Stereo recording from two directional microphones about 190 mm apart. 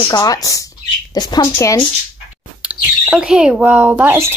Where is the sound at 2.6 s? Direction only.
5° right (ahead or behind).